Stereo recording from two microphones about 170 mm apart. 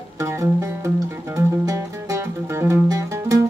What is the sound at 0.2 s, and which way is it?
Music, 20° right (ahead or behind).